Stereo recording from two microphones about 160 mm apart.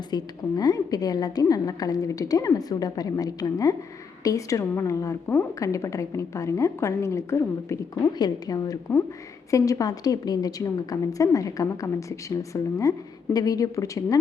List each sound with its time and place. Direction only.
0.1 s a woman's voice: 25° left (ahead or behind)